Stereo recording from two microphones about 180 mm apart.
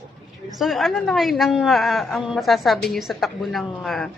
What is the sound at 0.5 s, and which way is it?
A woman's voice, centre (ahead or behind).